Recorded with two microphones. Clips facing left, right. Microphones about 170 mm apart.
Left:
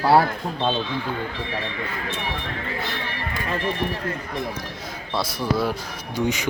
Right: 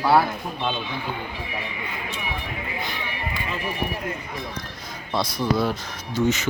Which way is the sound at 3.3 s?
45° left (ahead or behind).